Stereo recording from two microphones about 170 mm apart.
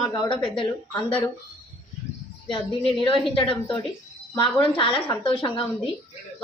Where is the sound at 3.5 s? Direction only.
30° left (ahead or behind).